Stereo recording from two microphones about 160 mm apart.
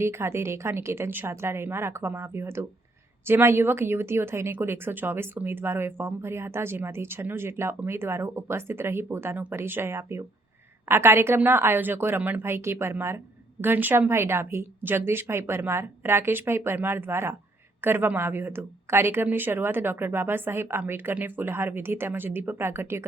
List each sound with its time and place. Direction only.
0.0 s a woman's voice: 15° right (ahead or behind)